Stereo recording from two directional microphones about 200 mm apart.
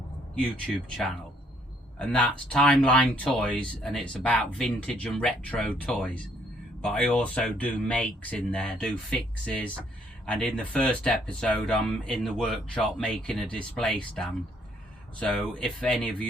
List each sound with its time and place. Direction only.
2.0 s speech: 5° left (ahead or behind)